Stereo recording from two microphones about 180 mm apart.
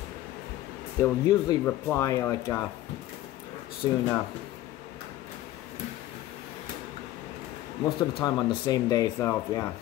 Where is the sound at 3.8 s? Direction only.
25° left (ahead or behind).